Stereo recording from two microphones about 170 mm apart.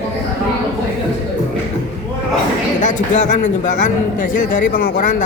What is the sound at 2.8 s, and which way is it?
Speech, 45° left (ahead or behind).